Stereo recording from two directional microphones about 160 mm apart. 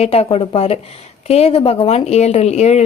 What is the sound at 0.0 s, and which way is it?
Speech, 40° left (ahead or behind).